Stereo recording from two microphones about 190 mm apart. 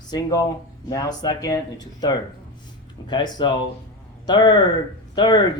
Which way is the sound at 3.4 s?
25° left (ahead or behind).